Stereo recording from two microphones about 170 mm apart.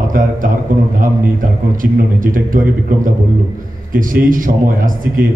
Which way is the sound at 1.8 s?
55° right (ahead or behind).